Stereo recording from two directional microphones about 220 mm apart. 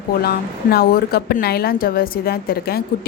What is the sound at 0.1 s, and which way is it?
A woman's voice, 45° left (ahead or behind).